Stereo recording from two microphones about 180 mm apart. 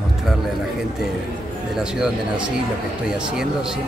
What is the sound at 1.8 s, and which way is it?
Speech, 5° right (ahead or behind).